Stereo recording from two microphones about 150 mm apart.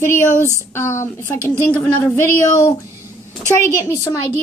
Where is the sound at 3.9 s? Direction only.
20° left (ahead or behind).